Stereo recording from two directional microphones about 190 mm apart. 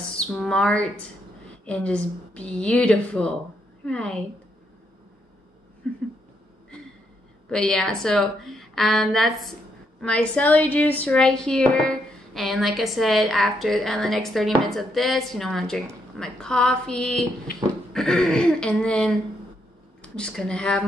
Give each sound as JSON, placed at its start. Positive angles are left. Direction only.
{"t": 0.1, "sound": "a sound", "side_deg": 5}
{"t": 1.7, "sound": "a woman's voice", "side_deg": 5}
{"t": 5.8, "sound": "speech", "side_deg": 5}
{"t": 7.4, "sound": "a woman's voice", "side_deg": 5}